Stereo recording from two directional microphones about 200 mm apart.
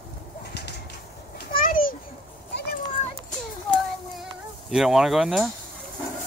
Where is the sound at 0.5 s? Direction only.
55° left (ahead or behind).